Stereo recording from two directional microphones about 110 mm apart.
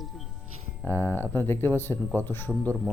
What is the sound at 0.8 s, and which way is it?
Speech, 20° left (ahead or behind).